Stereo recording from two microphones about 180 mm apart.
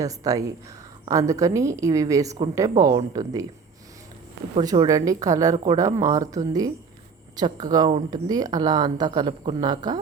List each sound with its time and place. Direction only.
0.0 s a woman's voice: 20° right (ahead or behind)
4.6 s speech: 20° right (ahead or behind)